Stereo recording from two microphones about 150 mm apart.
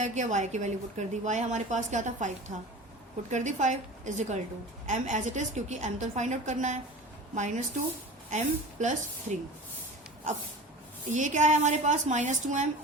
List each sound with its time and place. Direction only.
0.0 s a woman's voice: 55° right (ahead or behind)
11.1 s a woman's voice: 55° right (ahead or behind)